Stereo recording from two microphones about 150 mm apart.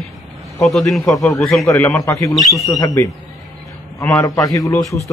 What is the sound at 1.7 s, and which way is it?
Speech, 20° left (ahead or behind).